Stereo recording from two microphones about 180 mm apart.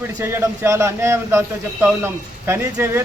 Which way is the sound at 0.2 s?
15° right (ahead or behind).